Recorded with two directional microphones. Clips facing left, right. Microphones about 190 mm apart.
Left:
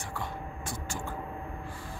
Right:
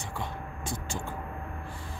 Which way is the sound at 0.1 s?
20° right (ahead or behind).